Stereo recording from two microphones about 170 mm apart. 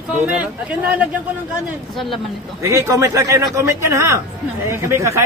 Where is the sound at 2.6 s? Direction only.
20° right (ahead or behind).